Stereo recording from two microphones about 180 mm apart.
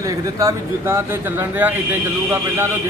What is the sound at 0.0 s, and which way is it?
Speech, 15° right (ahead or behind).